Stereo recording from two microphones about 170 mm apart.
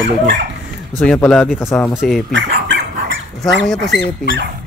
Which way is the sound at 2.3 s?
90° right.